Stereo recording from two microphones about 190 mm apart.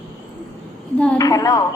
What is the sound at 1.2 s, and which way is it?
Speech, 20° left (ahead or behind).